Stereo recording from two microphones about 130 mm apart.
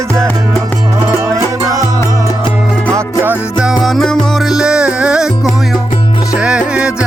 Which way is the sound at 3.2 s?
10° right (ahead or behind).